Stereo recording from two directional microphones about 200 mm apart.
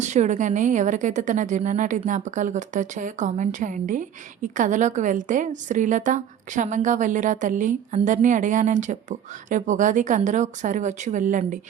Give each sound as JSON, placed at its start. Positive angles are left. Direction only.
{"t": 0.0, "sound": "a woman's voice", "side_deg": -35}